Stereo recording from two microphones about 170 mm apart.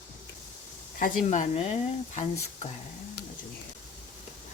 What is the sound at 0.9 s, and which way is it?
Speech, 50° left (ahead or behind).